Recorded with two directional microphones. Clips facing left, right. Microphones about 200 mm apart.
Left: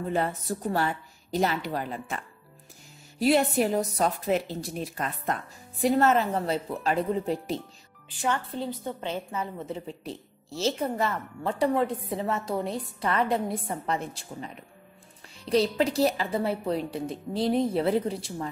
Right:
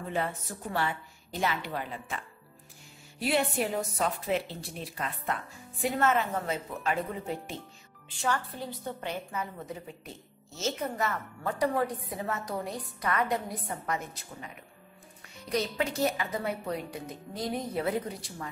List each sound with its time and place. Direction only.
0.1 s speech: 35° left (ahead or behind)
8.2 s a woman's voice: 20° left (ahead or behind)